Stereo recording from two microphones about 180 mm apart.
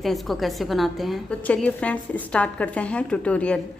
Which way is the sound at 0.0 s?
Centre (ahead or behind).